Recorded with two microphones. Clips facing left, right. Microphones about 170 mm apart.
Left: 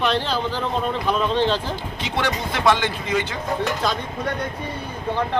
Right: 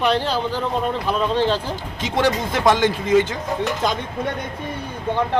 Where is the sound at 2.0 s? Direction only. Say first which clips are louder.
Right 5 dB; 45° right (ahead or behind).